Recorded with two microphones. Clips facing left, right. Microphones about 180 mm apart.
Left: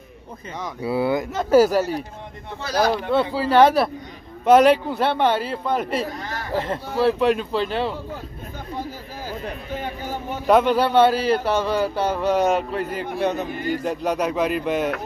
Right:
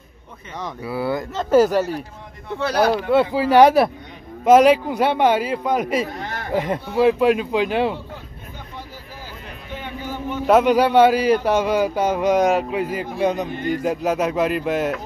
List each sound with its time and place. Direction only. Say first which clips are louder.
0.8 s speech: left 3 dB; 20° left (ahead or behind); by 2.0 s 5° left (ahead or behind)
2.6 s speech: right 3 dB; 60° right (ahead or behind)
3.1 s speech: right 3 dB; 15° right (ahead or behind)
4.5 s speech: right 2 dB; 5° right (ahead or behind)
9.3 s a sound: left 6 dB; 40° left (ahead or behind)
10.4 s a man's voice: right 2 dB; 5° right (ahead or behind)